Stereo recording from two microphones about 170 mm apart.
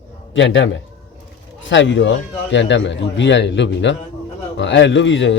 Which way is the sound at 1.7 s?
90° left.